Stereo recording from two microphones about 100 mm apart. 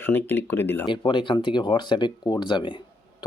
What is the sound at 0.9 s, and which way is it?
Speech, 50° left (ahead or behind).